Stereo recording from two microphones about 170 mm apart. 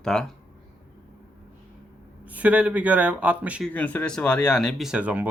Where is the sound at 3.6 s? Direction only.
10° left (ahead or behind); by 5.3 s 10° right (ahead or behind).